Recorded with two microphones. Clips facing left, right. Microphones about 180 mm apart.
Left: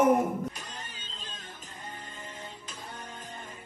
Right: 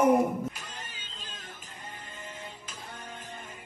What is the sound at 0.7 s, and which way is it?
Music, 35° left (ahead or behind).